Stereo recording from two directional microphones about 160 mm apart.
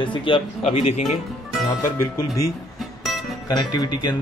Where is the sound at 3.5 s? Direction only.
25° left (ahead or behind).